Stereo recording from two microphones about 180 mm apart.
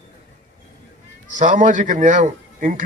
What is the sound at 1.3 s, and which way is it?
Speech, 45° right (ahead or behind).